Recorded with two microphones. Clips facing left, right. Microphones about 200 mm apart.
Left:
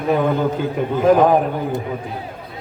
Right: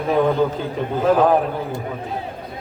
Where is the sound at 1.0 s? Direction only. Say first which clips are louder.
Left 2 dB; 10° left (ahead or behind).